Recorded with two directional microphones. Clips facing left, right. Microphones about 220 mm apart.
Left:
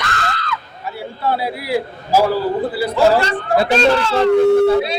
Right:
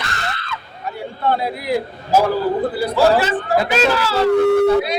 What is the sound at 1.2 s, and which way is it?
A man's voice, 5° left (ahead or behind).